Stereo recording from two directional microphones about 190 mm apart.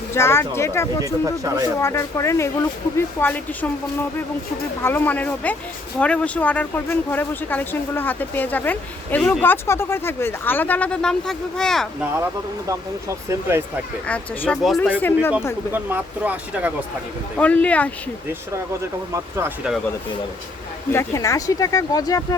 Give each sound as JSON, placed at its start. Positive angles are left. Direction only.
{"t": 0.1, "sound": "speech", "side_deg": 15}
{"t": 1.0, "sound": "speech", "side_deg": -15}
{"t": 1.8, "sound": "speech", "side_deg": 15}
{"t": 4.8, "sound": "speech", "side_deg": 10}
{"t": 12.1, "sound": "speech", "side_deg": -15}
{"t": 14.1, "sound": "speech", "side_deg": 5}
{"t": 15.7, "sound": "speech", "side_deg": -10}
{"t": 17.3, "sound": "speech", "side_deg": 5}
{"t": 19.1, "sound": "speech", "side_deg": -10}
{"t": 20.9, "sound": "speech", "side_deg": 15}